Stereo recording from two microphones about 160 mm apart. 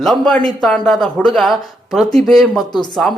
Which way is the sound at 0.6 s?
Centre (ahead or behind).